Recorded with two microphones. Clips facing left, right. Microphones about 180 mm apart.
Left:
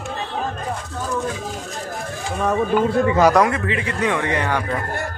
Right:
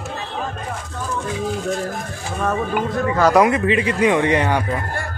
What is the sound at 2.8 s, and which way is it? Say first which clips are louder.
Speech: left 3 dB; 25° left (ahead or behind).